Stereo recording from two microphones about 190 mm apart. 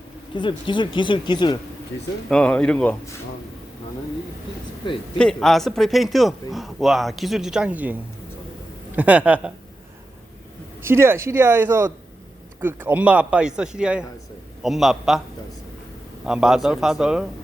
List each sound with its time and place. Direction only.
0.3 s speech: 25° left (ahead or behind)
2.3 s a man's voice: 5° left (ahead or behind)
5.1 s a man's voice: 5° left (ahead or behind)
9.0 s speech: 5° right (ahead or behind)
10.8 s a man's voice: 10° right (ahead or behind)
16.2 s a man's voice: 5° right (ahead or behind)